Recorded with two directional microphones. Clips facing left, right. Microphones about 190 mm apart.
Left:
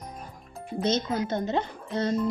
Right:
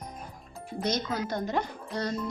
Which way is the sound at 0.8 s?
25° left (ahead or behind).